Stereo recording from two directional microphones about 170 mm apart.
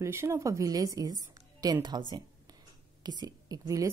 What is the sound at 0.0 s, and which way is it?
A woman's voice, 15° right (ahead or behind).